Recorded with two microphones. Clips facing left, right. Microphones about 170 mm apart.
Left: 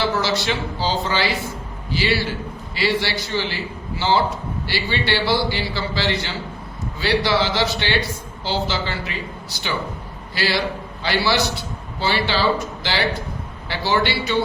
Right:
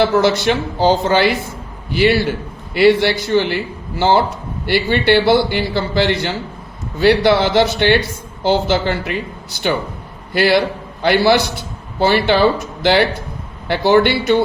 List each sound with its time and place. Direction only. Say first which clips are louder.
0.0 s a man's voice: right 8 dB; 55° right (ahead or behind)
10.3 s a man's voice: right 8 dB; 55° right (ahead or behind)